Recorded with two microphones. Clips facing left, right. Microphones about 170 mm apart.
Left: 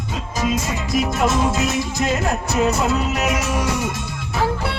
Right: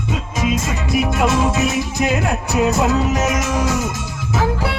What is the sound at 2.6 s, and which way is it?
Music, 15° right (ahead or behind).